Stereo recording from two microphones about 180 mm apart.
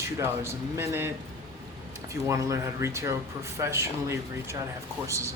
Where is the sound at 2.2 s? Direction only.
15° right (ahead or behind).